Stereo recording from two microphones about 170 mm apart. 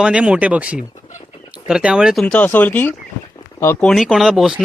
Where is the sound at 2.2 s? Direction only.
10° left (ahead or behind).